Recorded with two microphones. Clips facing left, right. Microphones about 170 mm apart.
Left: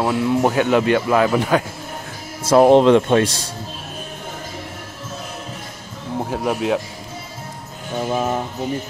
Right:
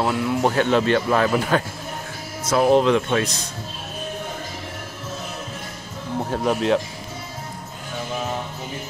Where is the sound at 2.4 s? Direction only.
35° left (ahead or behind).